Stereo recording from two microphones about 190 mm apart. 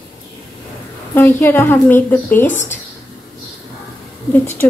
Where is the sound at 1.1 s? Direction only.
10° left (ahead or behind).